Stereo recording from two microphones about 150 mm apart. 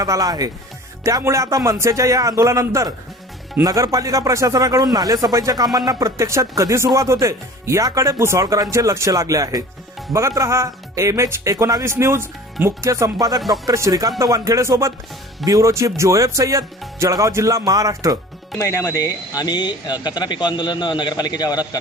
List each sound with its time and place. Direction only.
0.0 s speech: 25° right (ahead or behind)
18.5 s speech: 20° left (ahead or behind)